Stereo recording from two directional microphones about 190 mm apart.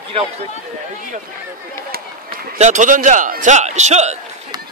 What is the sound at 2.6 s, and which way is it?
A man's voice, 40° right (ahead or behind).